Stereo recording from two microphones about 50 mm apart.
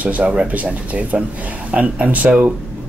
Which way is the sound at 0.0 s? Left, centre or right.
Right.